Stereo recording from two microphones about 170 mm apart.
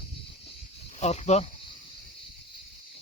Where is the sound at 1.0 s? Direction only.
40° left (ahead or behind).